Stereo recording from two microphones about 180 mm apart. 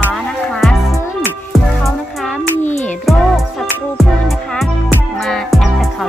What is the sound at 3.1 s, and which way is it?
Music, centre (ahead or behind).